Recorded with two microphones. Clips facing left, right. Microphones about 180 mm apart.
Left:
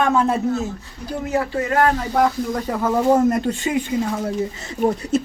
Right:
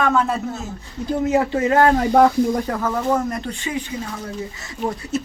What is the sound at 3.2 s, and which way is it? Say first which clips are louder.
Speech: left 7 dB; 40° left (ahead or behind).